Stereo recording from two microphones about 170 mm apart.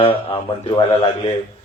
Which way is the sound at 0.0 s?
30° left (ahead or behind).